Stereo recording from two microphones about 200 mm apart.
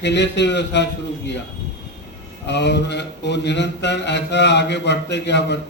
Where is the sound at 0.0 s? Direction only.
60° left (ahead or behind).